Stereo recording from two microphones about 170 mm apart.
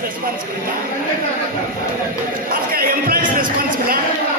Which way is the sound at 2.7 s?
60° right (ahead or behind).